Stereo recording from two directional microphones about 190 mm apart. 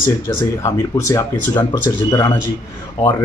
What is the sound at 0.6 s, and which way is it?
Speech, 15° left (ahead or behind).